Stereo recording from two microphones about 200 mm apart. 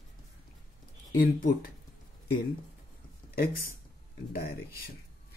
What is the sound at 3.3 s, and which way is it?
Speech, 45° left (ahead or behind).